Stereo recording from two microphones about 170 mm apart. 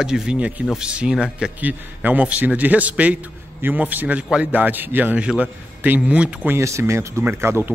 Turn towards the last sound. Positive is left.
turn(degrees=-15)  # may be behind; listen again after turning